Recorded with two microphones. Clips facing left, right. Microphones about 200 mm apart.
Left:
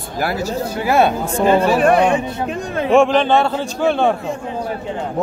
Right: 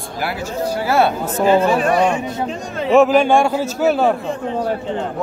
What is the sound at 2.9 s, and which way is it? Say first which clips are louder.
A man's voice: right 1 dB; 5° right (ahead or behind).